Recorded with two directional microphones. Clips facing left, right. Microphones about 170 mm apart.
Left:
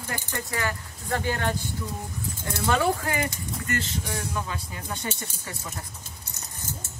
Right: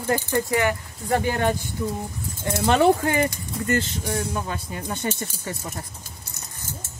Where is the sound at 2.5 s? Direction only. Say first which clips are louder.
Right 6 dB; 25° right (ahead or behind).